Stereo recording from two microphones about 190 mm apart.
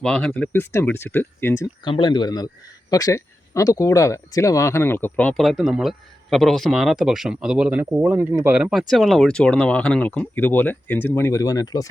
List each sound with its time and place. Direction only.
0.0 s speech: 5° left (ahead or behind)
1.8 s speech: 25° left (ahead or behind)